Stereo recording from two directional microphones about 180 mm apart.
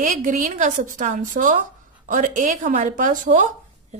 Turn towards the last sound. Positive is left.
turn(degrees=-45)  # may be behind; listen again after turning